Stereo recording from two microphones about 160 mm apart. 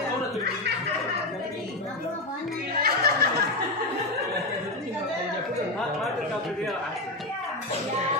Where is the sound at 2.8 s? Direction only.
75° right (ahead or behind).